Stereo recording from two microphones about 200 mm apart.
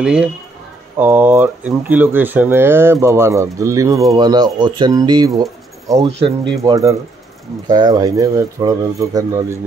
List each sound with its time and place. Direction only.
0.0 s speech: 5° right (ahead or behind); by 5.3 s 20° right (ahead or behind)
5.4 s a sound: 15° right (ahead or behind)
6.0 s speech: 30° right (ahead or behind)
6.6 s speech: 15° right (ahead or behind)